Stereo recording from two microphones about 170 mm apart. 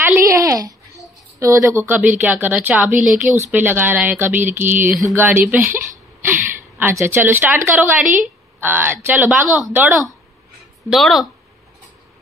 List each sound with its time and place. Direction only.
0.0 s a sound: 15° right (ahead or behind)
1.4 s a woman's voice: 15° right (ahead or behind)
10.8 s speech: centre (ahead or behind)